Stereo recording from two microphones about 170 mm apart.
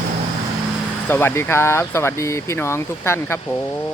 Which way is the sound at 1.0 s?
10° left (ahead or behind).